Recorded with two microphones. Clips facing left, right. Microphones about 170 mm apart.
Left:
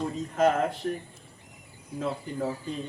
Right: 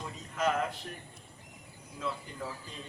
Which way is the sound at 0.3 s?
45° left (ahead or behind).